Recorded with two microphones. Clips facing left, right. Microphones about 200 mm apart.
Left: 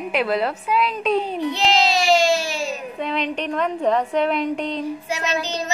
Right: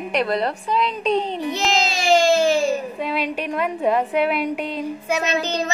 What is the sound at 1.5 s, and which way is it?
Child singing, 45° right (ahead or behind).